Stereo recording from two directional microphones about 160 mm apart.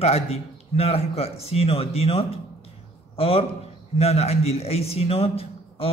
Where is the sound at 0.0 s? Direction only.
40° left (ahead or behind).